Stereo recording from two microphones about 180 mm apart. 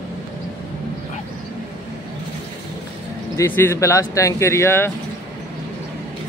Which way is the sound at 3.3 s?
15° left (ahead or behind).